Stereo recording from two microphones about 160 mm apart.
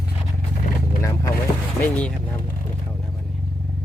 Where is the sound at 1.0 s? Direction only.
20° left (ahead or behind).